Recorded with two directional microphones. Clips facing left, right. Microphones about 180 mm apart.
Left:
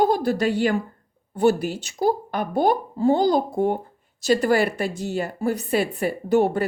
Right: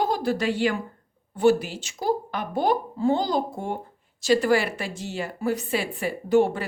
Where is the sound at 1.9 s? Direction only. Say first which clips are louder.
Left 3 dB; 45° left (ahead or behind).